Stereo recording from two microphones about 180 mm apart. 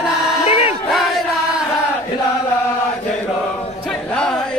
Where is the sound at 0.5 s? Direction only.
35° left (ahead or behind).